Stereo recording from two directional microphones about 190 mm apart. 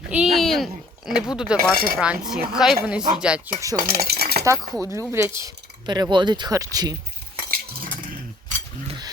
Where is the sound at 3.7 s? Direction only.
50° right (ahead or behind).